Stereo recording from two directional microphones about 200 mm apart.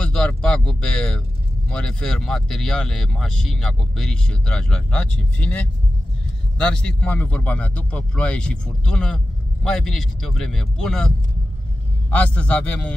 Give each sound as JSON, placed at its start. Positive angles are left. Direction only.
{"t": 0.0, "sound": "a sound", "side_deg": 5}
{"t": 1.7, "sound": "speech", "side_deg": 5}
{"t": 6.6, "sound": "a man's voice", "side_deg": 5}